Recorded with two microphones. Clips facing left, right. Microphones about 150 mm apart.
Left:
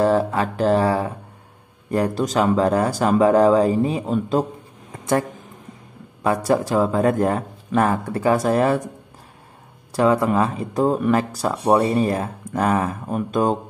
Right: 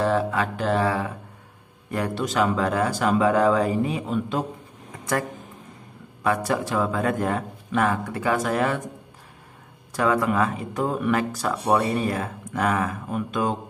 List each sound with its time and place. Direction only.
0.0 s speech: 35° left (ahead or behind)
6.2 s speech: 35° left (ahead or behind)
9.9 s speech: 30° left (ahead or behind)